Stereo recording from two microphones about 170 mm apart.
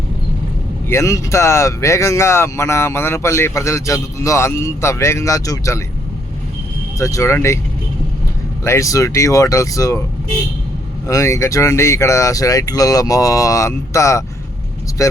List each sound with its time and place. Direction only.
0.9 s speech: 15° left (ahead or behind)
7.0 s speech: 20° left (ahead or behind)
8.6 s speech: 15° left (ahead or behind)
11.0 s speech: 15° left (ahead or behind)